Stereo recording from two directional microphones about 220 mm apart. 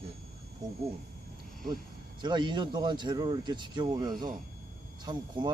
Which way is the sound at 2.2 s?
20° right (ahead or behind).